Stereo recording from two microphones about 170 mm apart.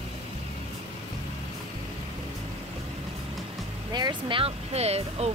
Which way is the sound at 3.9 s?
25° right (ahead or behind).